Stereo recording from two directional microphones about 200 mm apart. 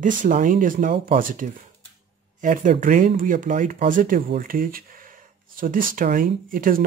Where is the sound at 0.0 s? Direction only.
40° right (ahead or behind).